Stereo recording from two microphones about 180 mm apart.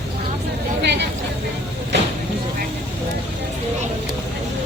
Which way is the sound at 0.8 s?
70° right (ahead or behind).